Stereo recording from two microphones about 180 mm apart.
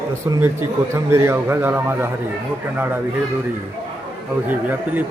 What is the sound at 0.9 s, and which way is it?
A man's voice, 15° right (ahead or behind).